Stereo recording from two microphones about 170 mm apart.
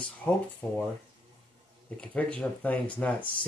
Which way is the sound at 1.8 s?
10° left (ahead or behind).